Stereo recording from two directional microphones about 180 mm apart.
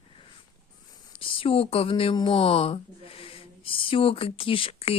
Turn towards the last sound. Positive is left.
turn(degrees=30)  # may be behind; listen again after turning